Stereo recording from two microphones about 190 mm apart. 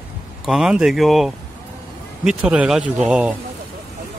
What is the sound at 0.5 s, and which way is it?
Speech, 5° right (ahead or behind).